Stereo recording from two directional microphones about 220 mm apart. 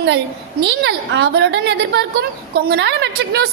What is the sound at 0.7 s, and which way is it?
Speech, 50° right (ahead or behind).